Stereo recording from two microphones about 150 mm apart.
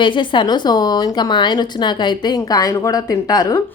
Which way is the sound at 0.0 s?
35° left (ahead or behind).